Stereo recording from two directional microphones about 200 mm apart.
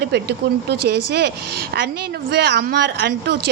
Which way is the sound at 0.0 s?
55° right (ahead or behind).